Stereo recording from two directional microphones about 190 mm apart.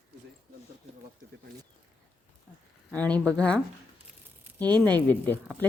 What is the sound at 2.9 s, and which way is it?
Speech, 5° left (ahead or behind).